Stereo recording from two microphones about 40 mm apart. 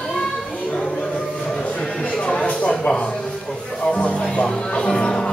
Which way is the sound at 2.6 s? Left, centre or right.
Left.